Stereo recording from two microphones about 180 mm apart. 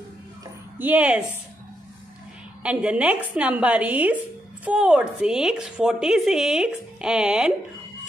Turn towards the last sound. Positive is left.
turn(degrees=-5)  # may be behind; listen again after turning